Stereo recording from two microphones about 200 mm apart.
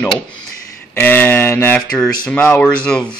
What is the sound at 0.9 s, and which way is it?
Speech, 10° left (ahead or behind).